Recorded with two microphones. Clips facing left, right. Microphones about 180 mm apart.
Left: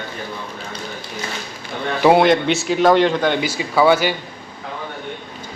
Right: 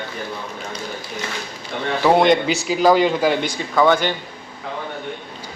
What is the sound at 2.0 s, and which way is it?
A man's voice, 10° left (ahead or behind).